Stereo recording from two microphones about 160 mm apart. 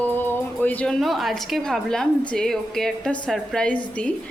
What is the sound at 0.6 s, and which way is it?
A woman's voice, 10° left (ahead or behind).